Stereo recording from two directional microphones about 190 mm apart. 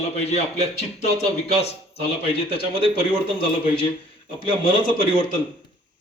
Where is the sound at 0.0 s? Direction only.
35° left (ahead or behind).